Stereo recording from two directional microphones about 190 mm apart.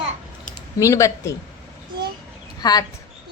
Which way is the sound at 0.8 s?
15° left (ahead or behind).